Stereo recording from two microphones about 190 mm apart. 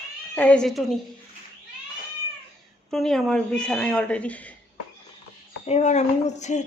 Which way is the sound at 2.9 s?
Centre (ahead or behind).